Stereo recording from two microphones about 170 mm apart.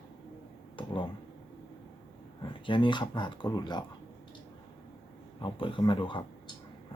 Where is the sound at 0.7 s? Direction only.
30° left (ahead or behind).